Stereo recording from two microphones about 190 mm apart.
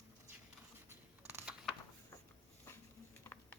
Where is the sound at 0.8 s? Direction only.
15° right (ahead or behind).